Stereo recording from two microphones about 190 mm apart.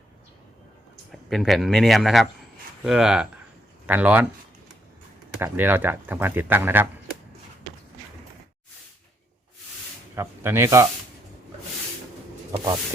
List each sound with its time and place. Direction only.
1.1 s speech: centre (ahead or behind)
5.4 s speech: 10° right (ahead or behind)
10.2 s speech: 15° right (ahead or behind)
12.5 s a sound: 20° right (ahead or behind)